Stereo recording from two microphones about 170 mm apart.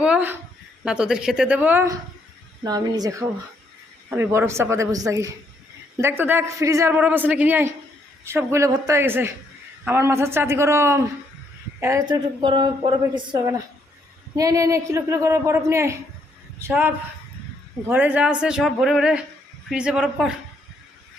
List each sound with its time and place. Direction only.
0.0 s a sound: 10° right (ahead or behind)
0.9 s a man's voice: 5° right (ahead or behind); by 13.0 s 30° right (ahead or behind)
13.0 s a man's voice: 20° right (ahead or behind); by 20.3 s 5° right (ahead or behind)